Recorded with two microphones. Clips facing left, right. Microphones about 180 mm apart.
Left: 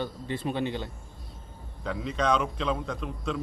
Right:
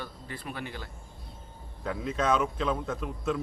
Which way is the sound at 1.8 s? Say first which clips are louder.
Left 1 dB; 5° right (ahead or behind).